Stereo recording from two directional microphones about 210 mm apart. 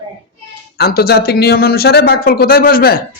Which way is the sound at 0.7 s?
50° left (ahead or behind).